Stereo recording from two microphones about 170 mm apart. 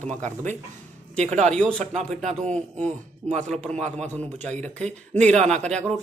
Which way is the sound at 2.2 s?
45° right (ahead or behind).